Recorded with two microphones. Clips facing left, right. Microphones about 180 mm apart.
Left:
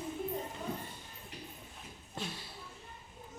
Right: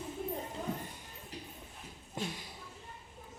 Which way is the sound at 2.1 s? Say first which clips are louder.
Right 3 dB; 15° right (ahead or behind).